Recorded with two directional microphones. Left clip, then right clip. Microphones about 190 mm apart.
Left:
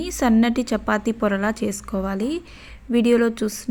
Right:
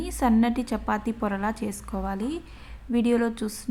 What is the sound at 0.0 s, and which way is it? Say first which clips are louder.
A woman's voice: left 4 dB; 15° left (ahead or behind).